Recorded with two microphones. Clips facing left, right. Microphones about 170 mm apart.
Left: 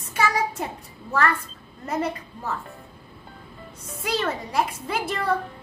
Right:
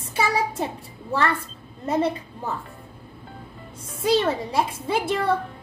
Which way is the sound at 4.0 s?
25° right (ahead or behind).